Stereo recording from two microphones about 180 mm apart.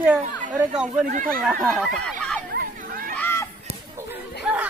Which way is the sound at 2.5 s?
55° right (ahead or behind).